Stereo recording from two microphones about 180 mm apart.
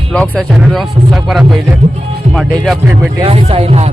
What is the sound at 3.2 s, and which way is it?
Speech, 30° right (ahead or behind).